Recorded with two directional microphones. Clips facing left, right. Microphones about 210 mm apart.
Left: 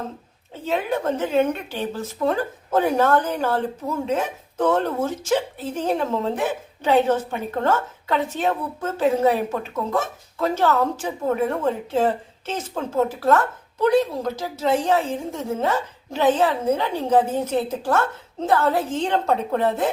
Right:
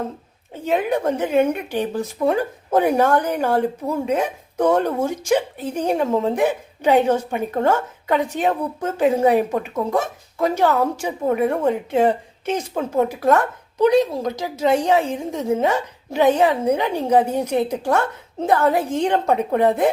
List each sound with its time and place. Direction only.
0.5 s a woman's voice: 15° right (ahead or behind)